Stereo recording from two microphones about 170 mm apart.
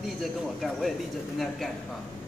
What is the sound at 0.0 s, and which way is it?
Speech, centre (ahead or behind).